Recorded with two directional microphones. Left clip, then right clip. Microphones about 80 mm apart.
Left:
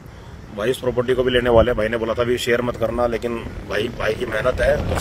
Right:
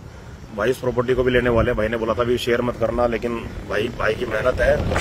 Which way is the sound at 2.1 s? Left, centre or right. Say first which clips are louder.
Left 1 dB; left.